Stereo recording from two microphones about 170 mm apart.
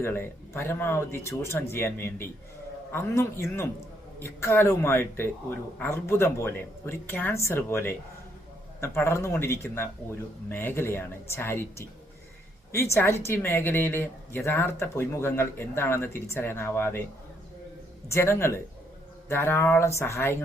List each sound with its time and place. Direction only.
0.0 s speech: 15° left (ahead or behind)
12.9 s speech: 15° left (ahead or behind)
18.1 s speech: 15° left (ahead or behind)